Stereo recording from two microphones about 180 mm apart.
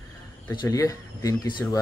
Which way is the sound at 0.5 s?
20° left (ahead or behind).